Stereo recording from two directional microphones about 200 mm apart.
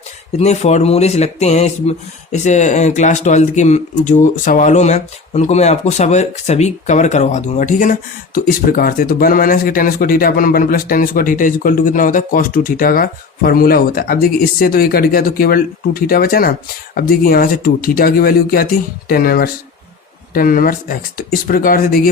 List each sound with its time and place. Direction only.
0.3 s speech: 35° left (ahead or behind)